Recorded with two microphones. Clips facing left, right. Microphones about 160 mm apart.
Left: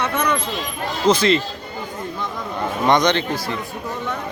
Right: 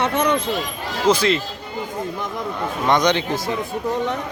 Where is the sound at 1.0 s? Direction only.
10° right (ahead or behind).